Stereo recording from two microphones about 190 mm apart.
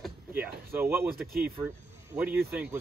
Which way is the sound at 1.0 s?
55° right (ahead or behind).